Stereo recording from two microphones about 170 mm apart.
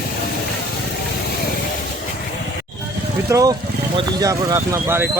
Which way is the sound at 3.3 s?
20° right (ahead or behind).